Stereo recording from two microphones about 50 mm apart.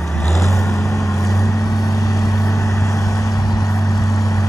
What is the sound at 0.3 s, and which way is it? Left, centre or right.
Vehicle, left.